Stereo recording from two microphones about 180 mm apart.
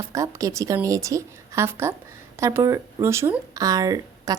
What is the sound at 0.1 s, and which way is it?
A woman's voice, 20° right (ahead or behind).